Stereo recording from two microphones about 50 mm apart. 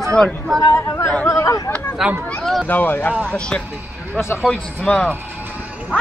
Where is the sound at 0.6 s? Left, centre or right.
Left.